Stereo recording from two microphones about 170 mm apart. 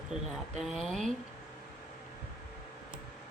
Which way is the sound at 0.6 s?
Centre (ahead or behind).